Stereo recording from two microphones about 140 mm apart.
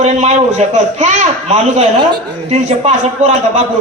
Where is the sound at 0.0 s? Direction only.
50° right (ahead or behind).